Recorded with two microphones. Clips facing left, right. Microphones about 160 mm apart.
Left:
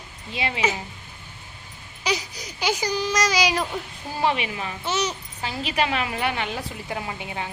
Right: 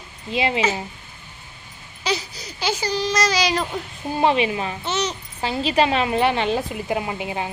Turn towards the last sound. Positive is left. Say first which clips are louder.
# right 5 dB
turn(degrees=-20)  # may be behind; listen again after turning